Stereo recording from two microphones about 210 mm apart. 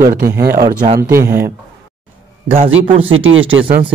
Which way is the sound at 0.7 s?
35° right (ahead or behind).